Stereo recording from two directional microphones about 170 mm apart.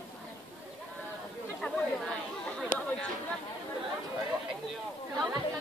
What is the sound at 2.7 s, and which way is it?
Speech, 50° left (ahead or behind).